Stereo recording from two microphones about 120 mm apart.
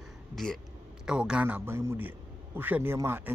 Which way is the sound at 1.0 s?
5° right (ahead or behind).